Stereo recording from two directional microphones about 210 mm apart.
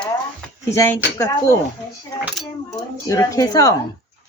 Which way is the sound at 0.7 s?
15° left (ahead or behind).